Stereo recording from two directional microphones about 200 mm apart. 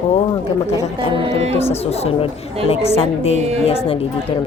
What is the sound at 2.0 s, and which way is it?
A woman's voice, 30° left (ahead or behind).